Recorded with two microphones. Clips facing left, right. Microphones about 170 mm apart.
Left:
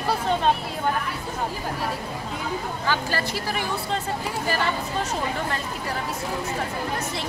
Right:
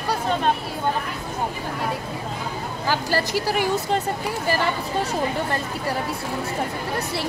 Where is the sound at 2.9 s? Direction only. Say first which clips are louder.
Right 4 dB; 40° right (ahead or behind).